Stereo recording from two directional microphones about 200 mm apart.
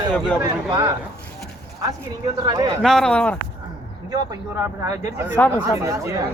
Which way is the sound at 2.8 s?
Centre (ahead or behind).